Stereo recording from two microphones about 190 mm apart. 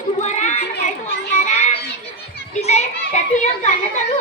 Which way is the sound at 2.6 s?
35° left (ahead or behind).